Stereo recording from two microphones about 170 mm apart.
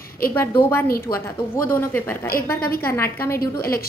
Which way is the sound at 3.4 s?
60° left (ahead or behind).